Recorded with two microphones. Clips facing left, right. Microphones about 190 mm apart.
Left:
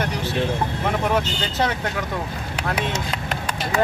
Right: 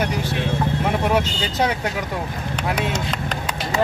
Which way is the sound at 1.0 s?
10° right (ahead or behind).